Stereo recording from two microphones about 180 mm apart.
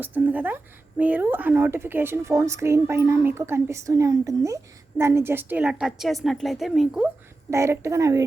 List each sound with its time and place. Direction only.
0.0 s speech: 10° right (ahead or behind)
7.5 s speech: 15° right (ahead or behind)